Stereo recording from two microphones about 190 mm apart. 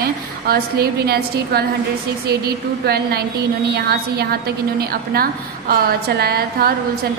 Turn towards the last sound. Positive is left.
turn(degrees=-55)  # may be behind; listen again after turning